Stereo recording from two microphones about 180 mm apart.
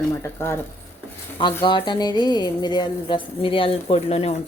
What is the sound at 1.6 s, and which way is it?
A woman's voice, 25° left (ahead or behind).